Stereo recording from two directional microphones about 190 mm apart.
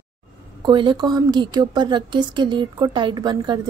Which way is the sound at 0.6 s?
25° right (ahead or behind).